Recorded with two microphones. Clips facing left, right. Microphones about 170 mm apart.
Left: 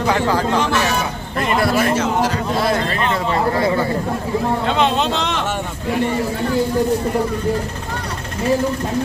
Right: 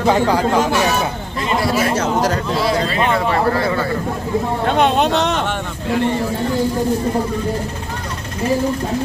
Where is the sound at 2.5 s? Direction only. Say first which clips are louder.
Right 1 dB; 50° left (ahead or behind).